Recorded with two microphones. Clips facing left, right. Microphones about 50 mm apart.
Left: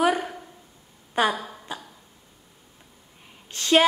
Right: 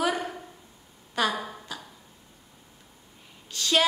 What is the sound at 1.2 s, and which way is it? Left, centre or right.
Speech, left.